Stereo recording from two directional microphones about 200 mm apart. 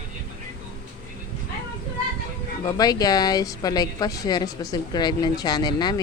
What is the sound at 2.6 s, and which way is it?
Speech, 20° left (ahead or behind).